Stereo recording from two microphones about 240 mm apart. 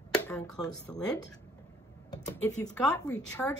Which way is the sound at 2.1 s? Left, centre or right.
Centre.